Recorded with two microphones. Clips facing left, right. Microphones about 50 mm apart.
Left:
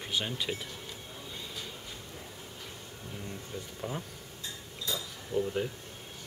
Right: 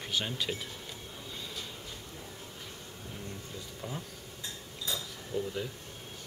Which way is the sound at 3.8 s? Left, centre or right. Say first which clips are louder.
Left 3 dB; left.